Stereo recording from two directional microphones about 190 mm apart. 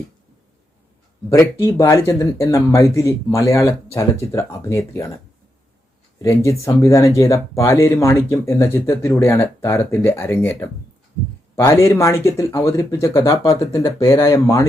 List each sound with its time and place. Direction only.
1.6 s speech: 15° left (ahead or behind)
6.2 s speech: 15° left (ahead or behind)